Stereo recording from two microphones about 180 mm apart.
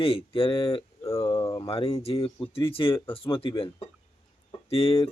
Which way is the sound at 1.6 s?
30° left (ahead or behind).